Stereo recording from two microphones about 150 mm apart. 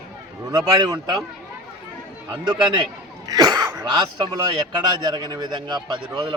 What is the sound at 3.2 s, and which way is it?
Cough, 25° right (ahead or behind).